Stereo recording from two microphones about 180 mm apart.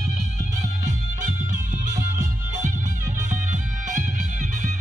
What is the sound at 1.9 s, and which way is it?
Music, 45° right (ahead or behind).